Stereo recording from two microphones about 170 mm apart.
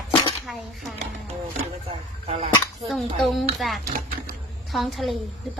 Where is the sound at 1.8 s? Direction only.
40° right (ahead or behind).